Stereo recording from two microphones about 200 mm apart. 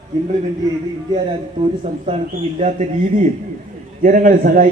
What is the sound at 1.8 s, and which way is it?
A man's voice, 30° right (ahead or behind).